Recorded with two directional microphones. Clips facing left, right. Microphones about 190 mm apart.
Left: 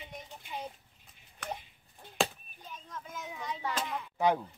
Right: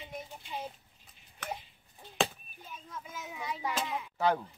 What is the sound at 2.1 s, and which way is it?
Hands, 5° right (ahead or behind).